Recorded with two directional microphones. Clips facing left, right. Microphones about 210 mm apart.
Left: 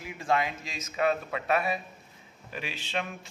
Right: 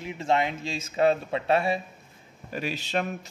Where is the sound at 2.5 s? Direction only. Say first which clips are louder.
Right 7 dB; 40° right (ahead or behind).